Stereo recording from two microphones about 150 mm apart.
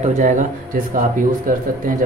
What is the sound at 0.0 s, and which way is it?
A man's voice, 55° right (ahead or behind).